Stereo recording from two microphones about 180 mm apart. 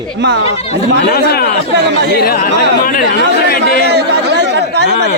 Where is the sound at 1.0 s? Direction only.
60° left (ahead or behind).